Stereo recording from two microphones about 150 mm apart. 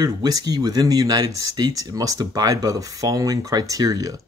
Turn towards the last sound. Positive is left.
turn(degrees=-25)  # may be behind; listen again after turning